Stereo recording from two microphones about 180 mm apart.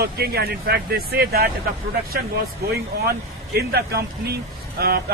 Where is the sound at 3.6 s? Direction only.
60° right (ahead or behind).